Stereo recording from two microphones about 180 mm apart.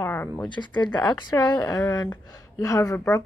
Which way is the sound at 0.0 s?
15° left (ahead or behind).